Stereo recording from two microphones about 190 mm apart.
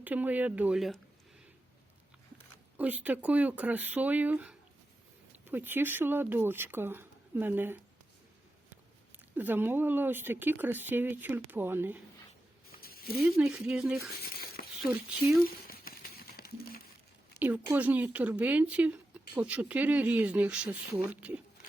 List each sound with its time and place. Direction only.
0.0 s speech: 10° right (ahead or behind)
2.7 s speech: 10° right (ahead or behind)
9.3 s speech: 10° right (ahead or behind)
12.8 s a sound: 50° left (ahead or behind)
13.1 s speech: centre (ahead or behind)
15.4 s a sound: 50° left (ahead or behind)
17.4 s speech: 10° right (ahead or behind)